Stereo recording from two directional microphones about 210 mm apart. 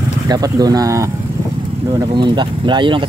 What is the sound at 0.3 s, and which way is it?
Speech, 20° right (ahead or behind).